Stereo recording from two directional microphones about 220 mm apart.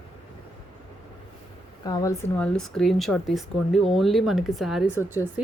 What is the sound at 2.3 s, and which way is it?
Speech, 5° left (ahead or behind).